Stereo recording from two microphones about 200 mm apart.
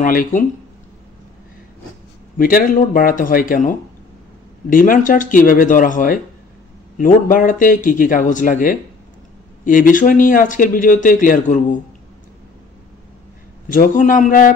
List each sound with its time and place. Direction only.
0.0 s a man's voice: 45° left (ahead or behind)
2.3 s a man's voice: 45° left (ahead or behind)
13.7 s speech: 40° left (ahead or behind)